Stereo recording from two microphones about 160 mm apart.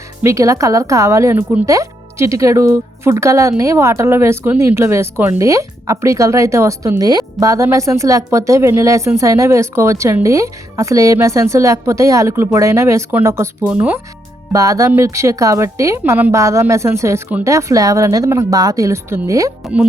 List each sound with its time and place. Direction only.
0.2 s speech: 20° right (ahead or behind)
19.6 s speech: 5° right (ahead or behind)